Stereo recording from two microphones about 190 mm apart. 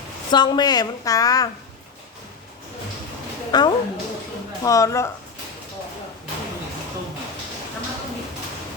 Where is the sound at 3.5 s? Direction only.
20° left (ahead or behind).